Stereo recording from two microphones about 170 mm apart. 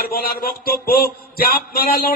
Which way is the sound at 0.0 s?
65° left (ahead or behind).